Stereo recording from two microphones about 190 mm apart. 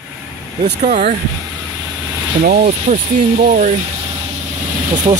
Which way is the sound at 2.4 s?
50° right (ahead or behind).